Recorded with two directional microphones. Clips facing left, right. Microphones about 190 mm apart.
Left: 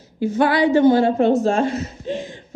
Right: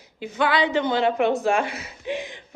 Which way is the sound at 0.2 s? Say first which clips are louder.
Left 6 dB; 20° right (ahead or behind).